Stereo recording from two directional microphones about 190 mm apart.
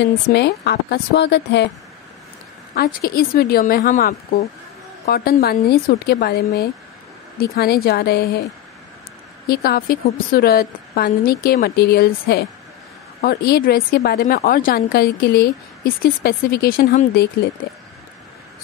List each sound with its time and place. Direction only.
0.0 s a woman's voice: 60° left (ahead or behind)
2.7 s a woman's voice: 55° left (ahead or behind)
9.5 s a woman's voice: 50° left (ahead or behind)